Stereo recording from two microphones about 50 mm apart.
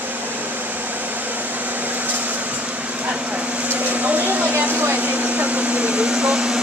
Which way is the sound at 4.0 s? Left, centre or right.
Right.